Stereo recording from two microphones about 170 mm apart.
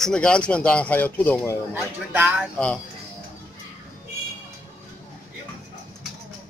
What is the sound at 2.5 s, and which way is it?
Speech, 5° left (ahead or behind).